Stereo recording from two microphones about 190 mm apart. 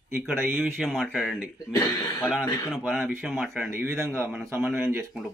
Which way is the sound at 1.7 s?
15° left (ahead or behind).